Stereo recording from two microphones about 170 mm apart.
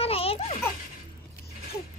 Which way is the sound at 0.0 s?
35° left (ahead or behind).